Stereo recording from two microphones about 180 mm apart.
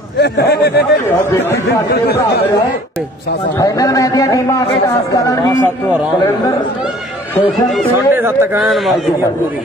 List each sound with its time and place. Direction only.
0.2 s a man's voice: 65° left (ahead or behind)
1.0 s speech: 15° left (ahead or behind)
1.9 s a man's voice: 60° left (ahead or behind)
3.5 s a man's voice: 20° left (ahead or behind)
8.1 s speech: 10° right (ahead or behind)
8.5 s a man's voice: centre (ahead or behind)